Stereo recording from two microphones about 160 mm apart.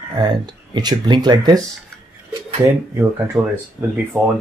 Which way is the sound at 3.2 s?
10° right (ahead or behind).